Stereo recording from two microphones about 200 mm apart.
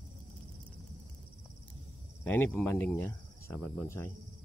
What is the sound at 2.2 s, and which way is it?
Speech, 10° left (ahead or behind).